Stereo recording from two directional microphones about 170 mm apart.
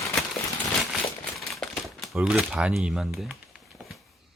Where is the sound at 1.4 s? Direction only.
Centre (ahead or behind).